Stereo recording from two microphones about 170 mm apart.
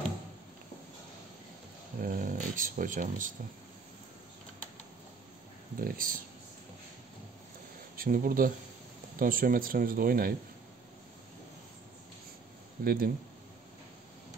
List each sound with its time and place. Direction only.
2.0 s speech: 50° right (ahead or behind)
5.8 s speech: 55° right (ahead or behind)
7.9 s speech: 55° right (ahead or behind)
12.8 s speech: 60° right (ahead or behind)